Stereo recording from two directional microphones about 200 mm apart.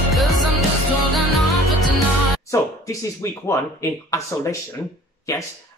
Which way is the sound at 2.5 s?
15° left (ahead or behind).